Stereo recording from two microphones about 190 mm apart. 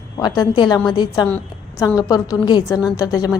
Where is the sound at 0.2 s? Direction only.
20° left (ahead or behind).